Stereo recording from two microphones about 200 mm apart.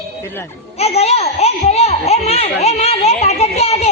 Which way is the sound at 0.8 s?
30° left (ahead or behind).